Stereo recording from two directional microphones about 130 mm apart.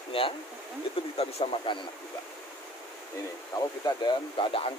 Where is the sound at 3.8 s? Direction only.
35° left (ahead or behind).